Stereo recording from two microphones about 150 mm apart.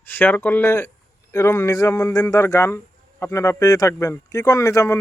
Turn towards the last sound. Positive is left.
turn(degrees=20)  # may be behind; listen again after turning